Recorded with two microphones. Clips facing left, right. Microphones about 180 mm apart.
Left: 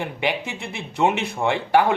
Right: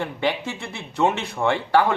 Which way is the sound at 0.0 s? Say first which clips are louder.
Right 1 dB; 15° left (ahead or behind).